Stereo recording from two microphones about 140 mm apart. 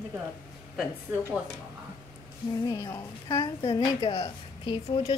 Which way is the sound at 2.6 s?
25° left (ahead or behind).